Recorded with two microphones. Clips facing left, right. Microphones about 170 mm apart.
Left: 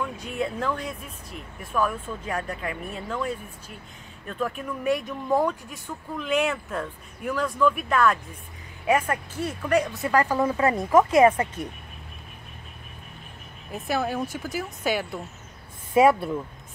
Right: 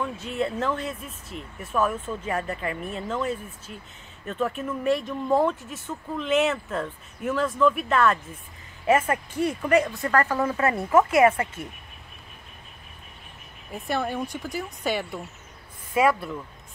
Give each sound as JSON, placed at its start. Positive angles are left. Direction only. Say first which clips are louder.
{"t": 0.3, "sound": "speech", "louder": "right 2 dB", "side_deg": 0}
{"t": 10.0, "sound": "speech", "louder": "left 1 dB", "side_deg": 15}
{"t": 13.7, "sound": "speech", "louder": "left 1 dB", "side_deg": 0}
{"t": 15.9, "sound": "speech", "louder": "left 4 dB", "side_deg": 25}